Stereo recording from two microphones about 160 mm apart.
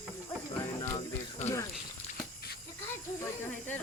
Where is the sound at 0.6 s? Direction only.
20° left (ahead or behind).